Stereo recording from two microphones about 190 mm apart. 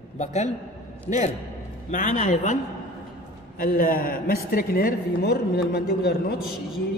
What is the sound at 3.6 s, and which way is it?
A man's voice, 50° left (ahead or behind).